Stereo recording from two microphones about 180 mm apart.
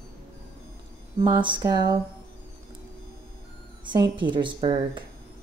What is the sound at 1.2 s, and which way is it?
Speech, 25° right (ahead or behind).